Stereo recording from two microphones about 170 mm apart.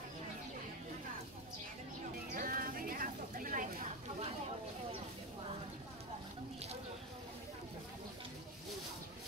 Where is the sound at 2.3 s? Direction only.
55° right (ahead or behind).